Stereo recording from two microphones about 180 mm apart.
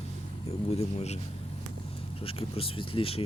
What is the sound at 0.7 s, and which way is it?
Speech, 35° left (ahead or behind).